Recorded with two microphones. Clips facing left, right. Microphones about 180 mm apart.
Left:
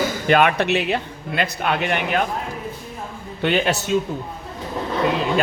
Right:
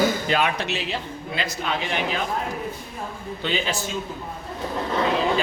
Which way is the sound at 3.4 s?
60° left (ahead or behind).